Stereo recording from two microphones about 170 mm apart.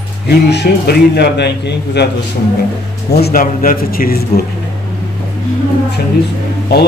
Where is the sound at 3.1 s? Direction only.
60° left (ahead or behind).